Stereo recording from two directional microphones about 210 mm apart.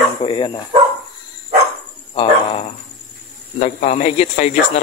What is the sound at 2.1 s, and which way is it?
Dog, 25° left (ahead or behind).